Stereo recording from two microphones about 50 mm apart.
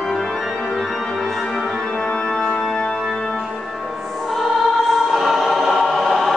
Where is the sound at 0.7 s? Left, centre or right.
Centre.